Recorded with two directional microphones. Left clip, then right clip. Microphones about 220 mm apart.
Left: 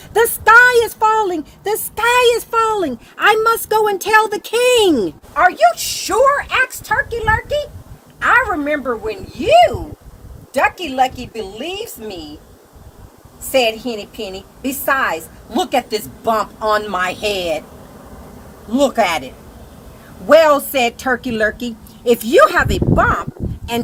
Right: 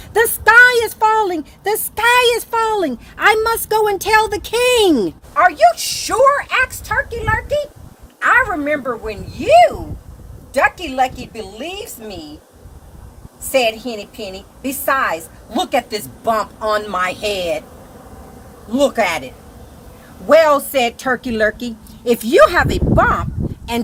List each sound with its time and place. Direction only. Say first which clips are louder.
0.1 s speech: left 1 dB; 30° right (ahead or behind); by 5.1 s 45° right (ahead or behind)
5.3 s a woman's voice: right 1 dB; 10° right (ahead or behind)
13.5 s a woman's voice: left 1 dB; 10° right (ahead or behind)
18.7 s a woman's voice: left 1 dB; 10° right (ahead or behind)
20.2 s a woman's voice: left 1 dB; 20° right (ahead or behind); by 23.2 s 45° right (ahead or behind)